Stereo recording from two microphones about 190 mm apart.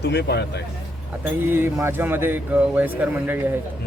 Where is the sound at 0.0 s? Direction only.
60° left (ahead or behind).